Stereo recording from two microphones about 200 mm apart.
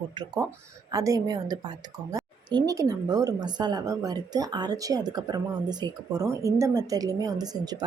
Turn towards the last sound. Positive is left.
turn(degrees=-20)  # may be behind; listen again after turning